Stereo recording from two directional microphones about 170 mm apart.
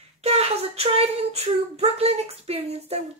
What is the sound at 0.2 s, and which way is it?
Child singing, 35° right (ahead or behind).